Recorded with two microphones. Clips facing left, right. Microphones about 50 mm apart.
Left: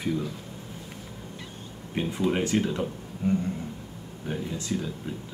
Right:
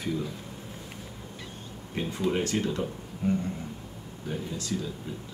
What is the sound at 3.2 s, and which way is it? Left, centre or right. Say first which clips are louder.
Speech: left 2 dB; centre.